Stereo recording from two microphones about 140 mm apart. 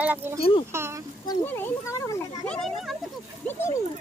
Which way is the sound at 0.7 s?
20° right (ahead or behind).